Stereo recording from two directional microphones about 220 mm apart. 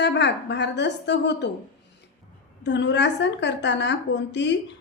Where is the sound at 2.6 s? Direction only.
55° left (ahead or behind).